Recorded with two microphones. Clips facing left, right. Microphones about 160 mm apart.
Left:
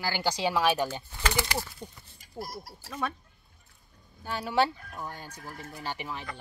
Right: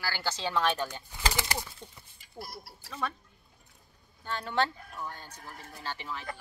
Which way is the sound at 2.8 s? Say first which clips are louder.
Left 2 dB; 10° left (ahead or behind).